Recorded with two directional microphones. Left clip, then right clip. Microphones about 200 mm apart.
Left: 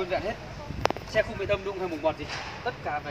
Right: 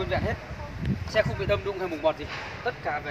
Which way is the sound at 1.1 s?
10° right (ahead or behind).